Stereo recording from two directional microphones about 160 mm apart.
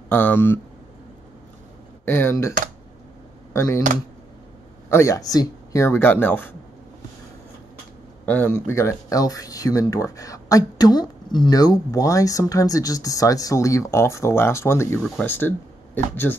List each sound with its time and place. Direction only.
0.1 s speech: 10° left (ahead or behind)
2.0 s speech: 15° left (ahead or behind)
3.5 s speech: 15° left (ahead or behind)
4.8 s speech: 20° left (ahead or behind)
8.3 s speech: 10° left (ahead or behind)
15.0 s speech: centre (ahead or behind)
15.2 s speech: 15° left (ahead or behind)